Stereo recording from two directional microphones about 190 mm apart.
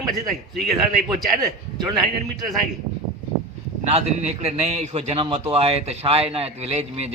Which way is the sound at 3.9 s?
35° right (ahead or behind).